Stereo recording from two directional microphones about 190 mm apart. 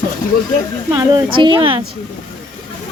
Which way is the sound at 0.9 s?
25° right (ahead or behind).